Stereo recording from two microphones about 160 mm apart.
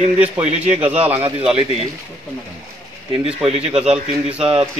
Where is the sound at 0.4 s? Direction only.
40° right (ahead or behind).